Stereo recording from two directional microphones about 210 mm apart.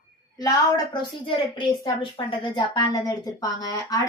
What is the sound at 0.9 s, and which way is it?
A woman's voice, 25° left (ahead or behind).